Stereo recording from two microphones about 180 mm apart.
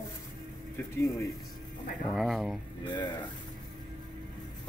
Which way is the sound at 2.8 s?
25° left (ahead or behind).